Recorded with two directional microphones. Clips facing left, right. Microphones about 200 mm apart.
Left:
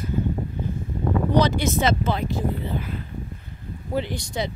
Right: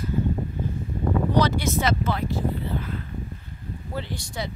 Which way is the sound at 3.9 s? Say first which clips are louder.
Left 7 dB; 15° left (ahead or behind).